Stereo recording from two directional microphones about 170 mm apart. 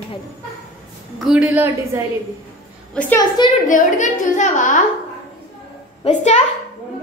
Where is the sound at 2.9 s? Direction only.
10° left (ahead or behind).